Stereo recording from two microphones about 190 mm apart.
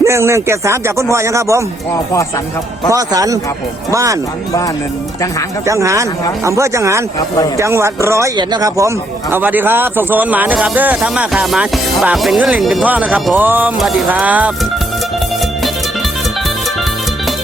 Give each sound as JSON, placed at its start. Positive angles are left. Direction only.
{"t": 0.0, "sound": "music", "side_deg": -15}
{"t": 2.9, "sound": "speech", "side_deg": -20}
{"t": 3.9, "sound": "music", "side_deg": -15}
{"t": 5.6, "sound": "music", "side_deg": -15}
{"t": 9.3, "sound": "music", "side_deg": -10}